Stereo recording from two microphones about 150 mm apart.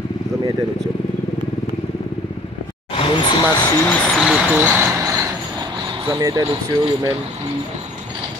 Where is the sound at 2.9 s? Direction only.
35° left (ahead or behind).